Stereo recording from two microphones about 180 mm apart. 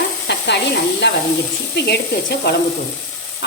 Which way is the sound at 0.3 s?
70° left (ahead or behind).